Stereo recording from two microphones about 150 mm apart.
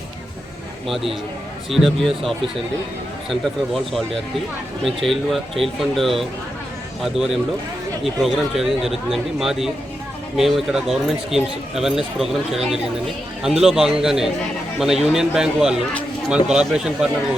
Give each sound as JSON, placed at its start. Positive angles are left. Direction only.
{"t": 0.9, "sound": "speech", "side_deg": 0}